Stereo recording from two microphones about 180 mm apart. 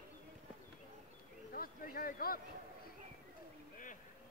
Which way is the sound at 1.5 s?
55° left (ahead or behind).